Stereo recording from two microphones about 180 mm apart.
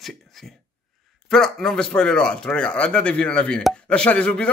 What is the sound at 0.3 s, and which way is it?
Speech, centre (ahead or behind).